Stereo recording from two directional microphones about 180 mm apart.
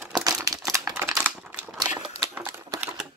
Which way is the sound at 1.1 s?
5° right (ahead or behind).